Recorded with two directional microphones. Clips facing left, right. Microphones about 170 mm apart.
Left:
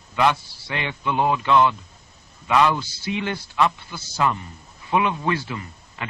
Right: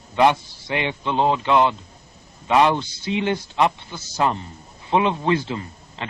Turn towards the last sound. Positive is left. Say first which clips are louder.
# right 2 dB
turn(degrees=-25)  # may be behind; listen again after turning